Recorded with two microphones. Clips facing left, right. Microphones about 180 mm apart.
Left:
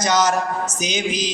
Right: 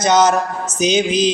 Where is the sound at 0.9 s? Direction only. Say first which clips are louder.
Right 10 dB; 15° left (ahead or behind).